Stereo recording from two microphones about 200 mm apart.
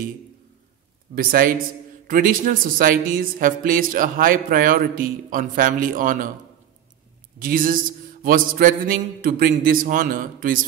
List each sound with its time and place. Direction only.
1.1 s speech: 50° right (ahead or behind)
7.3 s speech: 45° right (ahead or behind)